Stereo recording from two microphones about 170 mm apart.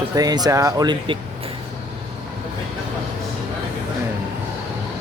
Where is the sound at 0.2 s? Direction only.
20° right (ahead or behind).